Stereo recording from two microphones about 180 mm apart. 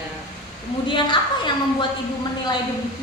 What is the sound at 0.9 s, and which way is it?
Speech, 25° left (ahead or behind).